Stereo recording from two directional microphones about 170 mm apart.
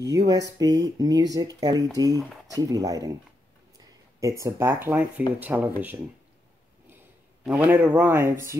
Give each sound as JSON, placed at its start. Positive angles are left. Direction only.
{"t": 0.0, "sound": "speech", "side_deg": -20}
{"t": 4.2, "sound": "speech", "side_deg": -20}
{"t": 7.4, "sound": "speech", "side_deg": -10}